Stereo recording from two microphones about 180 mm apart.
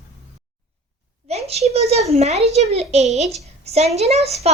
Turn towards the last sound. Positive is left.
turn(degrees=-35)  # may be behind; listen again after turning